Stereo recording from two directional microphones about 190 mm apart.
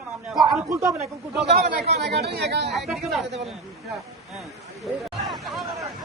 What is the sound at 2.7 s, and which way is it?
Speech, centre (ahead or behind).